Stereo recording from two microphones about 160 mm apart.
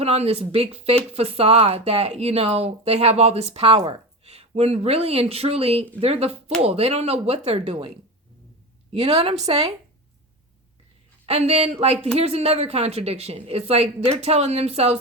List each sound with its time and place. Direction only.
0.0 s speech: 40° right (ahead or behind)
11.3 s speech: 40° right (ahead or behind)